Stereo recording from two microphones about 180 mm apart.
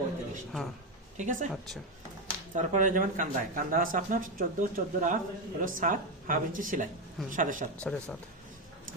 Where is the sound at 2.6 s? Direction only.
45° right (ahead or behind).